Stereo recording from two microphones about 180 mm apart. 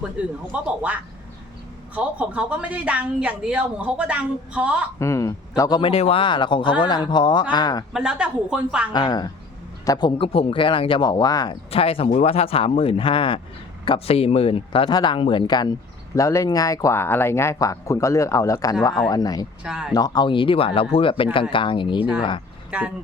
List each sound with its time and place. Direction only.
0.5 s speech: 5° right (ahead or behind)
2.0 s speech: 5° right (ahead or behind)
4.9 s speech: 15° left (ahead or behind)
5.9 s speech: 35° left (ahead or behind)
7.9 s a woman's voice: 5° right (ahead or behind)
8.9 s speech: 20° left (ahead or behind)
11.7 s speech: 30° left (ahead or behind)
19.6 s a woman's voice: 5° right (ahead or behind)
19.9 s speech: 25° left (ahead or behind)
22.7 s speech: 5° right (ahead or behind)